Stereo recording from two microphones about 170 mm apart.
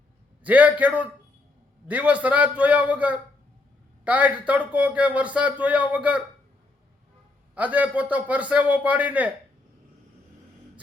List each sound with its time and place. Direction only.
0.4 s speech: 10° right (ahead or behind)
7.5 s speech: 10° right (ahead or behind)